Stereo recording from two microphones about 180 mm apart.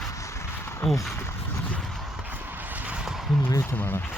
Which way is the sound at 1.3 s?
5° left (ahead or behind).